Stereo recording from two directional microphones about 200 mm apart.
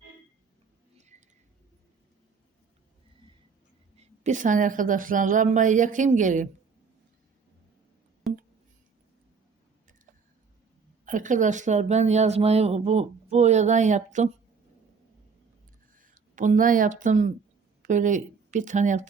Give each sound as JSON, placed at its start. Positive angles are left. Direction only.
{"t": 4.0, "sound": "speech", "side_deg": -35}
{"t": 11.0, "sound": "speech", "side_deg": -40}
{"t": 16.0, "sound": "speech", "side_deg": -40}